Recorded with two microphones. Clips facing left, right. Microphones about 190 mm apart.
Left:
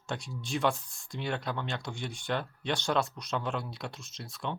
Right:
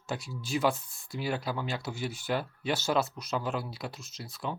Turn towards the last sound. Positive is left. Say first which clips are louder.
# right 1 dB
turn(degrees=0)  # may be behind; listen again after turning